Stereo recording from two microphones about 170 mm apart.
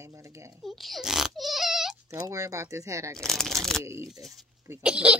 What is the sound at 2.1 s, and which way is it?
Speech, 20° right (ahead or behind).